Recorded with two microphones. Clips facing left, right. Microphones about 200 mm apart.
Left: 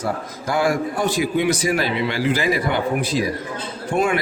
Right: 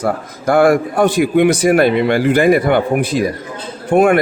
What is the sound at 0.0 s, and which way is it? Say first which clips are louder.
A man's voice: right 7 dB; 55° right (ahead or behind).